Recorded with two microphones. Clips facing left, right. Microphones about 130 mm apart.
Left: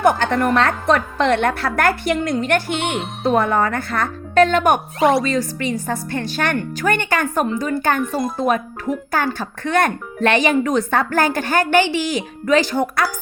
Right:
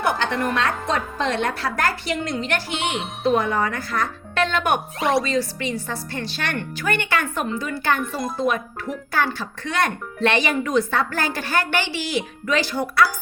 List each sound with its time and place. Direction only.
0.0 s speech: 50° left (ahead or behind)
4.9 s speech: centre (ahead or behind)
5.2 s speech: 50° left (ahead or behind)
8.0 s speech: centre (ahead or behind)
8.4 s speech: 50° left (ahead or behind)